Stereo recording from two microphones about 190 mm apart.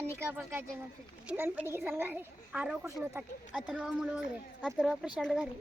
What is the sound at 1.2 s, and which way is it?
A woman's voice, 10° right (ahead or behind).